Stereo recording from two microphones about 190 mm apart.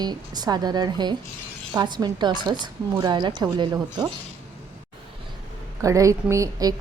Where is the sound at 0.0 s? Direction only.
20° right (ahead or behind).